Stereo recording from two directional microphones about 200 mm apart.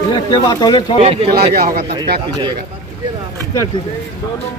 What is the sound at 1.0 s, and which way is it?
Speech, 30° right (ahead or behind).